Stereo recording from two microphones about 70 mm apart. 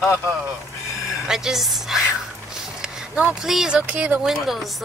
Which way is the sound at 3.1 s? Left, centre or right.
Right.